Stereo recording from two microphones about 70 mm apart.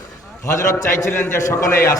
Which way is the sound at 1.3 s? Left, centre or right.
Left.